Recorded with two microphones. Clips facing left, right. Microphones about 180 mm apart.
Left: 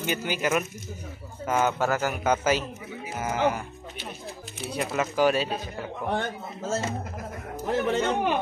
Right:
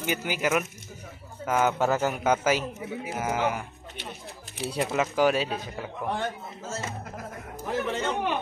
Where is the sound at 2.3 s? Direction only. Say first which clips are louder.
Even; 10° right (ahead or behind).